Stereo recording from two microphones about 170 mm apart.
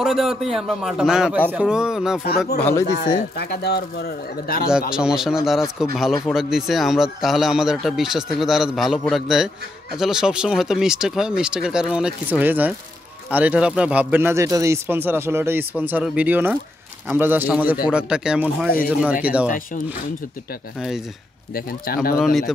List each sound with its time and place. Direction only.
0.0 s a man's voice: centre (ahead or behind)
2.2 s speech: 65° left (ahead or behind)
4.6 s a man's voice: 5° right (ahead or behind)
21.5 s speech: 60° left (ahead or behind)